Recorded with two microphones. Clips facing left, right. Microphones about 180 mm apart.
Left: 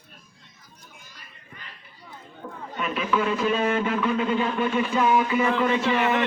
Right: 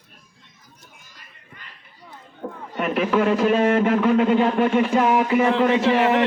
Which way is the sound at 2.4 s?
50° right (ahead or behind).